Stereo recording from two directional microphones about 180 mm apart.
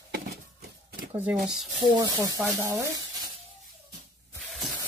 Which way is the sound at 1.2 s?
Centre (ahead or behind).